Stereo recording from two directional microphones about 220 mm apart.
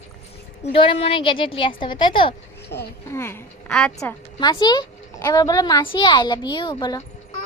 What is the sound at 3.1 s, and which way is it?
Speech, 10° left (ahead or behind).